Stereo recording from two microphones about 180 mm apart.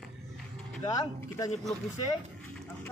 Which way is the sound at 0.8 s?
20° left (ahead or behind).